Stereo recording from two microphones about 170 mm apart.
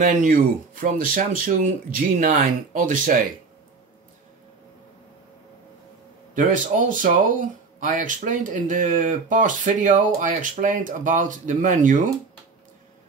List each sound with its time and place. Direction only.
0.0 s speech: 55° right (ahead or behind)
6.3 s speech: 50° right (ahead or behind)